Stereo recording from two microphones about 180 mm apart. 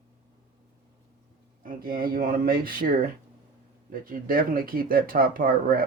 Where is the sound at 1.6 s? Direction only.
55° right (ahead or behind).